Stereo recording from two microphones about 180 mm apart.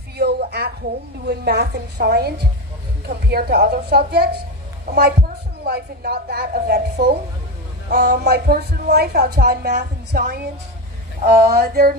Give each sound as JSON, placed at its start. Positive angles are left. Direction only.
{"t": 0.2, "sound": "a sound", "side_deg": -65}
{"t": 1.2, "sound": "a woman's voice", "side_deg": -65}
{"t": 5.7, "sound": "a woman's voice", "side_deg": -60}